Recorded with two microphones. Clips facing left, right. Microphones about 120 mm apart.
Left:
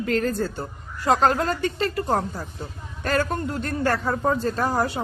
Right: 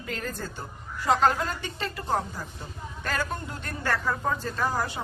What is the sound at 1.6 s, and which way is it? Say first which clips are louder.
Speech: left 9 dB; 50° left (ahead or behind).